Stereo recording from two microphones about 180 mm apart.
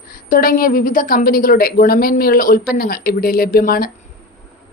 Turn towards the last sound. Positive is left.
turn(degrees=55)  # may be behind; listen again after turning